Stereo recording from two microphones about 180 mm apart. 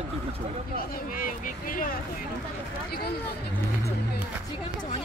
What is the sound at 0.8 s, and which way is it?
Speech, 50° left (ahead or behind).